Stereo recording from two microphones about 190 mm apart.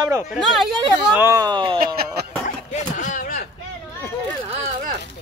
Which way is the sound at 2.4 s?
40° left (ahead or behind).